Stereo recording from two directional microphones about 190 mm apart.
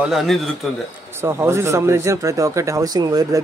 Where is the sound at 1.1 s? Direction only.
15° right (ahead or behind).